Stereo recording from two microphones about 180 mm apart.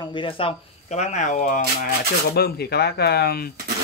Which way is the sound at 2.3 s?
65° left (ahead or behind).